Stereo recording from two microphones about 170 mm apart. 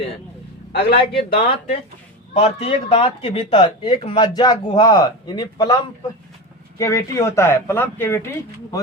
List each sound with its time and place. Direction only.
0.7 s speech: 65° left (ahead or behind)
2.3 s speech: 35° left (ahead or behind); by 8.3 s 15° left (ahead or behind)